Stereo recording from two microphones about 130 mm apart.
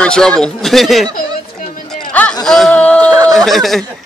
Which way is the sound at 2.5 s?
5° left (ahead or behind).